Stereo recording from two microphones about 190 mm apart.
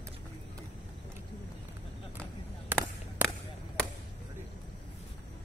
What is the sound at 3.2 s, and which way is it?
Whip, 5° left (ahead or behind).